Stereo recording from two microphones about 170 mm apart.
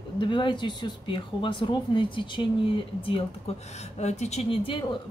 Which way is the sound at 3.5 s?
35° left (ahead or behind).